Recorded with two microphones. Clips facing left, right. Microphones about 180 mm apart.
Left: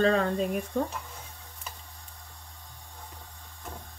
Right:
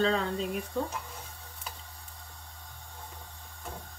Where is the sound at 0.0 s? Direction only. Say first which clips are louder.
Left 4 dB; 55° left (ahead or behind).